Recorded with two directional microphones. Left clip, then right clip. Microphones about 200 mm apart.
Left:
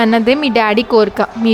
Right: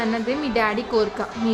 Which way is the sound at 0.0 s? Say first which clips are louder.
Left 12 dB; 50° left (ahead or behind).